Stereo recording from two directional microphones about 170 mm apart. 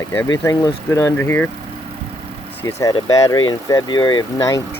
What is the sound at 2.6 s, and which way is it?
Speech, 20° left (ahead or behind).